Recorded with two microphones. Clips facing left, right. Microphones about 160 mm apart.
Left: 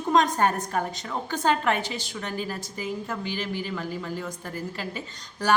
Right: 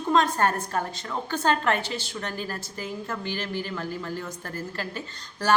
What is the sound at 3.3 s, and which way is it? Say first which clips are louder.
Speech: right 1 dB; 50° right (ahead or behind).